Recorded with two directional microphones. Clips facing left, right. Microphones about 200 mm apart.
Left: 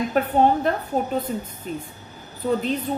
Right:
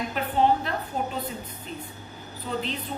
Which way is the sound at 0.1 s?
50° left (ahead or behind).